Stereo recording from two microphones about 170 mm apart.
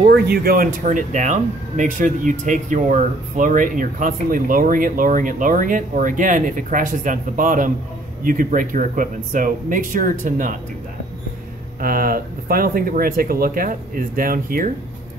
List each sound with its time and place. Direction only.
0.0 s speech: 65° right (ahead or behind)
0.8 s speech: 45° right (ahead or behind)
11.8 s speech: 55° right (ahead or behind)